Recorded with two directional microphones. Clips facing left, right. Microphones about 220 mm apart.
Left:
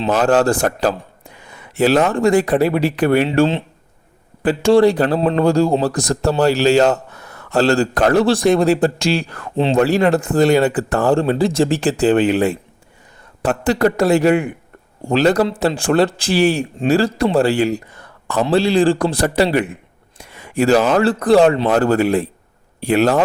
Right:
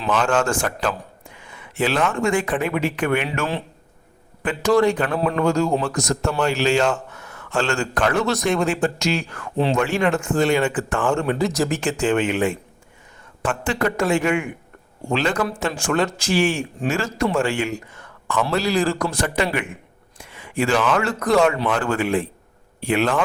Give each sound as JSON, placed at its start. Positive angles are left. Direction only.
{"t": 0.1, "sound": "a man's voice", "side_deg": 40}
{"t": 3.2, "sound": "a man's voice", "side_deg": 25}
{"t": 9.6, "sound": "a man's voice", "side_deg": 25}
{"t": 9.8, "sound": "a man's voice", "side_deg": 35}